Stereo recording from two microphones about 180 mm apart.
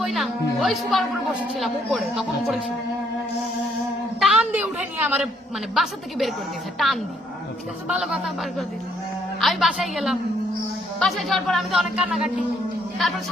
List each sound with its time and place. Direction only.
0.0 s a woman's voice: centre (ahead or behind)
4.2 s a woman's voice: 5° right (ahead or behind)